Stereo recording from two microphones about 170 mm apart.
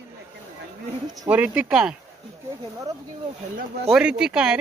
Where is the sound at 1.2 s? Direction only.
5° right (ahead or behind).